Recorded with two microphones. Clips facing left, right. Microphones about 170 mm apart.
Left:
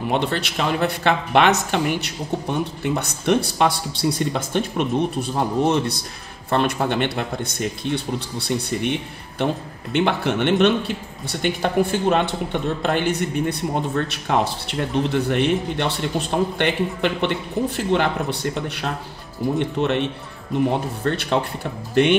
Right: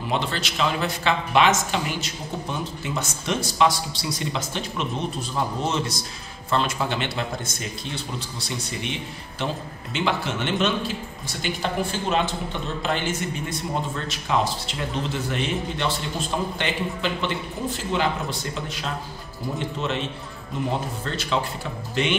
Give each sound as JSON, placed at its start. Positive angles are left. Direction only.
{"t": 0.1, "sound": "a man's voice", "side_deg": 55}